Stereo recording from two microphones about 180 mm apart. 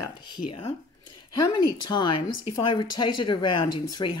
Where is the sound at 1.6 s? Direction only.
25° left (ahead or behind).